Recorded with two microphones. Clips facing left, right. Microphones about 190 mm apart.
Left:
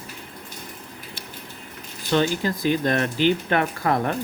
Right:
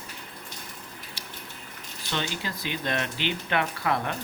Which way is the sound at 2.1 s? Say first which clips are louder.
Left 11 dB; 45° left (ahead or behind).